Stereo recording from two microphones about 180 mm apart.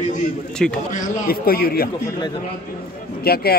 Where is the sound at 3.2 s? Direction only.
60° left (ahead or behind).